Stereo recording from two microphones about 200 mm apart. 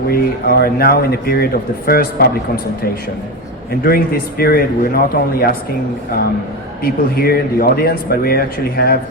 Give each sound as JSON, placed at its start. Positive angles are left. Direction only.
{"t": 0.1, "sound": "speech", "side_deg": 50}
{"t": 3.8, "sound": "speech", "side_deg": 50}
{"t": 6.8, "sound": "speech", "side_deg": 50}